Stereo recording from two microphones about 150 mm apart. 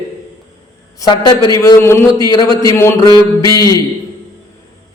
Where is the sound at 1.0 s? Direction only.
25° left (ahead or behind).